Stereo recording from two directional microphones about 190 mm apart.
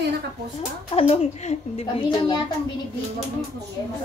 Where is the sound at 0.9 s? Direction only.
30° left (ahead or behind).